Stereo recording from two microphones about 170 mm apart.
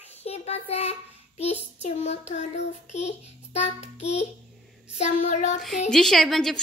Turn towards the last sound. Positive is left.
turn(degrees=0)  # may be behind; listen again after turning